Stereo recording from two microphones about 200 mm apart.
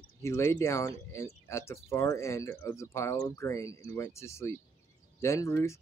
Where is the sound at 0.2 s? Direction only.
15° left (ahead or behind).